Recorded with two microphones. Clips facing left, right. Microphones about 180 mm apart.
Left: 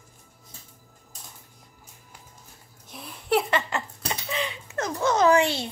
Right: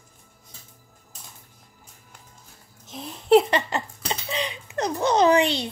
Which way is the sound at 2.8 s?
25° right (ahead or behind).